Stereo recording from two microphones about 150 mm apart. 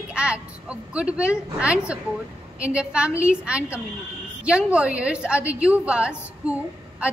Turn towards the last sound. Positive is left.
turn(degrees=-10)  # may be behind; listen again after turning